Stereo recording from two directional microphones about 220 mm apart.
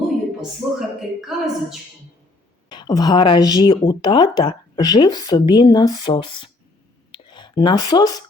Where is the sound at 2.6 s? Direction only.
20° left (ahead or behind).